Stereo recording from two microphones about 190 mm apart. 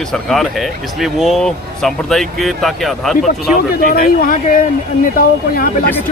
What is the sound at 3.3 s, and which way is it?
Speech, 45° left (ahead or behind).